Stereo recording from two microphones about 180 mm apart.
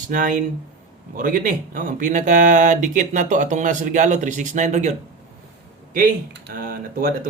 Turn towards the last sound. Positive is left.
turn(degrees=-50)  # may be behind; listen again after turning